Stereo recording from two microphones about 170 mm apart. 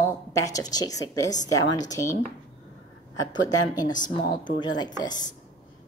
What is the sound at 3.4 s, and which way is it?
A woman's voice, 25° left (ahead or behind).